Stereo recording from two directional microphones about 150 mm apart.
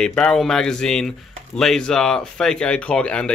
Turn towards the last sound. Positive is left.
turn(degrees=5)  # may be behind; listen again after turning